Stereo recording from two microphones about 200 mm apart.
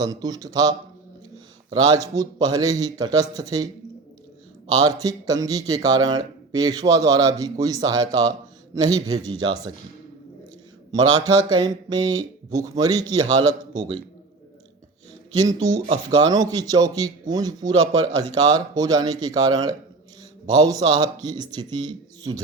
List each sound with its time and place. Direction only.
0.0 s a man's voice: 20° right (ahead or behind)
1.7 s a man's voice: 20° right (ahead or behind)
4.8 s a man's voice: 20° right (ahead or behind)
11.3 s a man's voice: 20° right (ahead or behind)
15.4 s a man's voice: 20° right (ahead or behind)